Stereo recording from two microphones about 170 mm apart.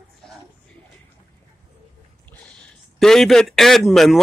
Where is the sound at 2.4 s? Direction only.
5° left (ahead or behind).